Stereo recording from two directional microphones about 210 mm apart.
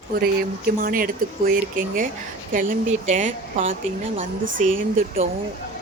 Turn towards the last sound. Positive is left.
turn(degrees=-40)  # may be behind; listen again after turning